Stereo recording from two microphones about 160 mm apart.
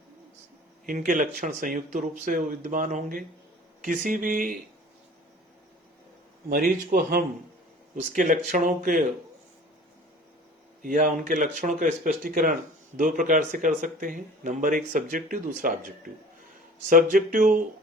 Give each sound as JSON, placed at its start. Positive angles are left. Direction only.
{"t": 0.9, "sound": "speech", "side_deg": -50}
{"t": 6.5, "sound": "speech", "side_deg": -65}
{"t": 7.9, "sound": "speech", "side_deg": -50}
{"t": 10.8, "sound": "speech", "side_deg": -50}